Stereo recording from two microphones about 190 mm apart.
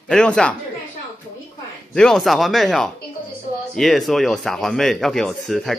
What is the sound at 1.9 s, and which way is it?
Speech, centre (ahead or behind).